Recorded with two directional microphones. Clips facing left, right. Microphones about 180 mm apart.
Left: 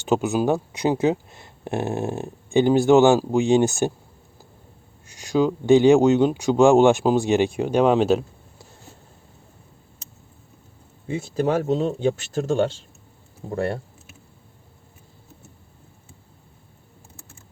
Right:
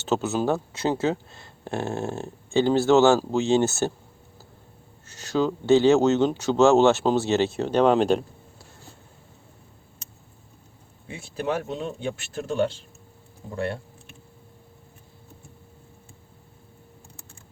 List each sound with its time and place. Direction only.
0.0 s speech: 15° left (ahead or behind)
5.0 s speech: 15° left (ahead or behind)
11.1 s speech: 45° left (ahead or behind)